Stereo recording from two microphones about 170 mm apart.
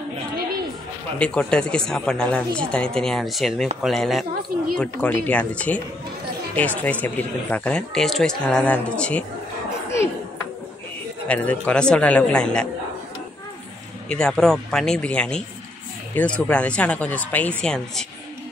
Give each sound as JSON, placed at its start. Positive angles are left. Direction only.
{"t": 1.1, "sound": "speech", "side_deg": 5}
{"t": 11.2, "sound": "speech", "side_deg": 10}
{"t": 14.0, "sound": "speech", "side_deg": 5}